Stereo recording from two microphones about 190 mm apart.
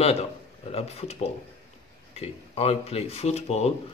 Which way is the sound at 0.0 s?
35° left (ahead or behind).